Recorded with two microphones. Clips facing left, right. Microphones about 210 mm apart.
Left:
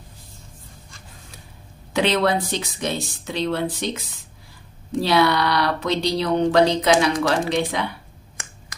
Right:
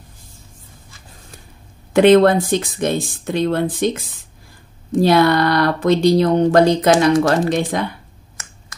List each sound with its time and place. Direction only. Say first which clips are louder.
2.0 s speech: right 10 dB; 50° right (ahead or behind)